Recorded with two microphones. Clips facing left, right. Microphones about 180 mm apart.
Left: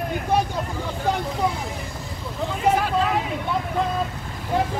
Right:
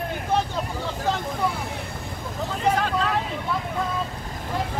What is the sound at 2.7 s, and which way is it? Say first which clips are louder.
Vehicle: left 3 dB; 10° left (ahead or behind).